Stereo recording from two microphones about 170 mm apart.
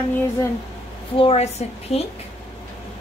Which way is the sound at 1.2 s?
40° left (ahead or behind).